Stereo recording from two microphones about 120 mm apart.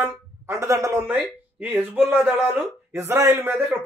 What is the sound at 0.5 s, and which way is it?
A man's voice, 25° right (ahead or behind).